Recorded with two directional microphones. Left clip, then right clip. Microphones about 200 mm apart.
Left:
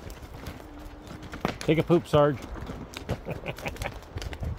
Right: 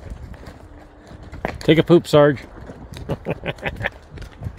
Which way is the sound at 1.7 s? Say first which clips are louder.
Right 10 dB; 60° right (ahead or behind).